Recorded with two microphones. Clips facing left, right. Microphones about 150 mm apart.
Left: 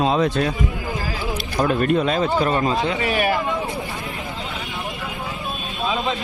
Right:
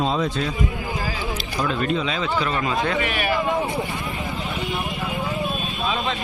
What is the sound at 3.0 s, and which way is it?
Speech, 45° left (ahead or behind).